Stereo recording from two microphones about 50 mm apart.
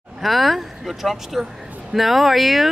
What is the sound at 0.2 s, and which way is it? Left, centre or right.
Speech, centre.